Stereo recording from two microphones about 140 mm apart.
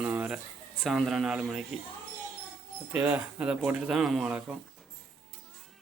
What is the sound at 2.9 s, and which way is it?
A man's voice, 10° right (ahead or behind).